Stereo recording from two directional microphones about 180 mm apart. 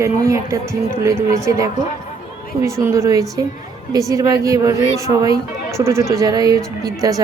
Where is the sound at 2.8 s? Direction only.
15° right (ahead or behind).